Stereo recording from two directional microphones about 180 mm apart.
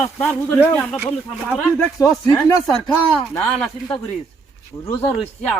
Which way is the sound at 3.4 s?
5° left (ahead or behind).